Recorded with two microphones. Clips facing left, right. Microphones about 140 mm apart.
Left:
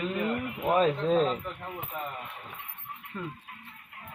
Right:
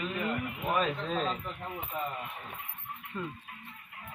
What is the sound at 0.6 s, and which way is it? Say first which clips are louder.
Speech: left 6 dB; 30° left (ahead or behind).